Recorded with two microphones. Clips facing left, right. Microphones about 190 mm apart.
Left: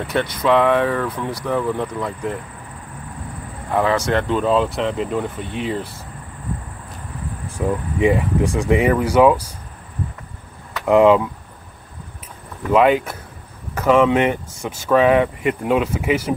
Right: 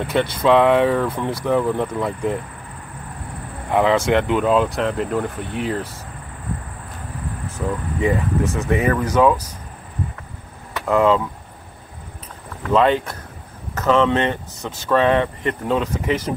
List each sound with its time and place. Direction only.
0.3 s speech: 25° right (ahead or behind)
3.7 s speech: 15° right (ahead or behind)
4.7 s speech: centre (ahead or behind)
7.4 s speech: 15° left (ahead or behind)
10.9 s speech: 15° left (ahead or behind)
12.7 s speech: 10° left (ahead or behind)